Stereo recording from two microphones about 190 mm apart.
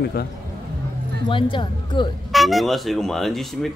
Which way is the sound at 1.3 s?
25° left (ahead or behind).